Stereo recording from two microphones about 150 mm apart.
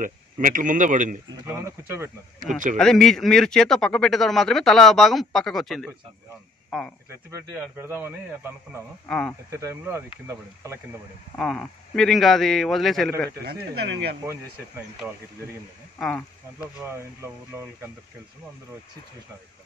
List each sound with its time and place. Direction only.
0.0 s a man's voice: 60° right (ahead or behind)
1.4 s a man's voice: 20° right (ahead or behind)
2.4 s a man's voice: 60° right (ahead or behind)
2.8 s a man's voice: 5° left (ahead or behind)
7.2 s a man's voice: 20° right (ahead or behind)
9.0 s a man's voice: 5° left (ahead or behind)
9.5 s speech: 20° right (ahead or behind)
11.3 s a man's voice: 5° left (ahead or behind)
16.0 s a man's voice: 5° left (ahead or behind)
16.8 s a man's voice: 20° right (ahead or behind)